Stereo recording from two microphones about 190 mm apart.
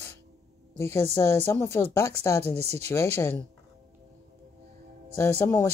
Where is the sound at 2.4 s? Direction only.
35° right (ahead or behind).